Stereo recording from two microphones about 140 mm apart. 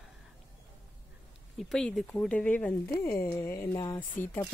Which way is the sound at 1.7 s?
5° left (ahead or behind).